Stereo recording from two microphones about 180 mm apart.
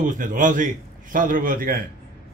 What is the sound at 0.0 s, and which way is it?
A man's voice, 45° right (ahead or behind).